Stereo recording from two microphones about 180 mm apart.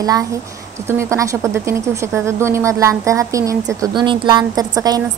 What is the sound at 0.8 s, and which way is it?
A woman's voice, 15° right (ahead or behind).